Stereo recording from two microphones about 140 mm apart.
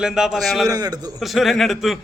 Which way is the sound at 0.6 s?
25° right (ahead or behind).